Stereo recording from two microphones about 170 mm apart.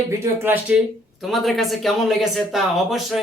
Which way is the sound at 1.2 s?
Centre (ahead or behind).